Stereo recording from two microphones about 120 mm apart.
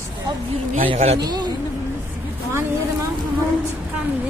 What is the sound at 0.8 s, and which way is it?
Speech, 60° right (ahead or behind).